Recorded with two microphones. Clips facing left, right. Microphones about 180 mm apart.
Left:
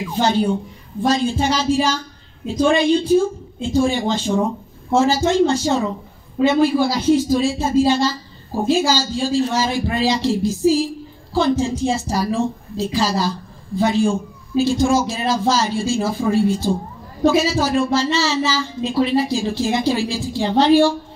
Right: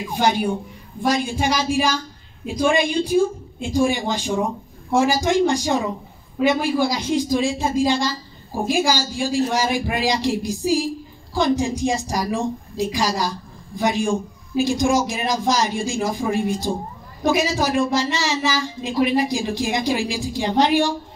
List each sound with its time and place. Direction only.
0.1 s a woman's voice: 15° right (ahead or behind)